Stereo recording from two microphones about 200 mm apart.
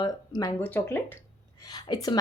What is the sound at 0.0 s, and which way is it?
A woman's voice, 20° left (ahead or behind).